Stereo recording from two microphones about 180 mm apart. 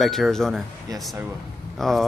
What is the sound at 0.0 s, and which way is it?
Speech, centre (ahead or behind).